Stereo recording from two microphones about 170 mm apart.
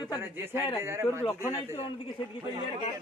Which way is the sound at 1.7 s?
30° left (ahead or behind).